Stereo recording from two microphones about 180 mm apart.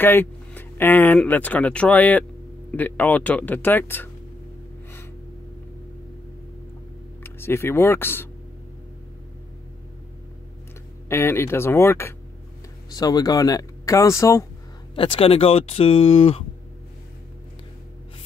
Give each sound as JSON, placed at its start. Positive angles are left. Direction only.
{"t": 0.0, "sound": "speech", "side_deg": 10}
{"t": 7.2, "sound": "speech", "side_deg": 15}
{"t": 11.1, "sound": "speech", "side_deg": 15}
{"t": 15.0, "sound": "speech", "side_deg": 30}